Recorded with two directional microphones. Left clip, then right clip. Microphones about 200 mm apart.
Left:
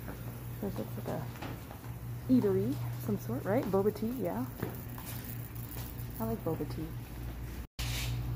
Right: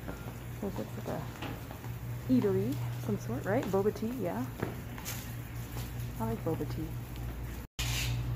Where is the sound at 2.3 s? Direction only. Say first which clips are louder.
Left 1 dB; 10° right (ahead or behind).